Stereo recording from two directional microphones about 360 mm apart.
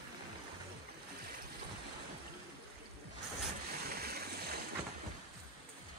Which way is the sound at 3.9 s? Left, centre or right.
Right.